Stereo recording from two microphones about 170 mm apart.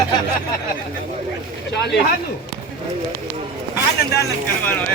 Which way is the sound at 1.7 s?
75° left (ahead or behind).